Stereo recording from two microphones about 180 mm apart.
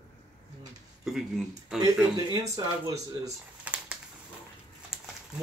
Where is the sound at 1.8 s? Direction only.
20° right (ahead or behind).